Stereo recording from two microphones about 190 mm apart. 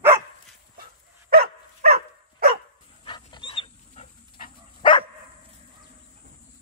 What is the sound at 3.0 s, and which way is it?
Dog, 25° left (ahead or behind).